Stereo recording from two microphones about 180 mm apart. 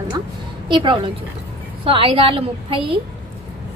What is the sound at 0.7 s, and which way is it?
A woman's voice, 25° right (ahead or behind).